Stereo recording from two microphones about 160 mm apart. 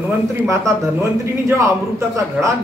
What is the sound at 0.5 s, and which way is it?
A man's voice, 15° right (ahead or behind).